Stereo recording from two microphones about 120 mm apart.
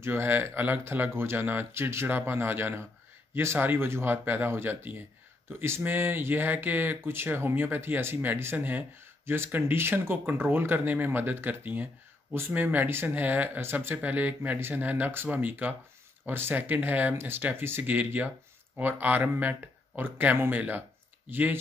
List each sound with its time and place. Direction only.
0.0 s speech: 20° right (ahead or behind)